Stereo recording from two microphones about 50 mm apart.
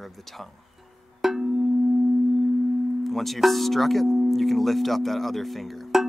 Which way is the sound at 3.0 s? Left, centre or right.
Centre.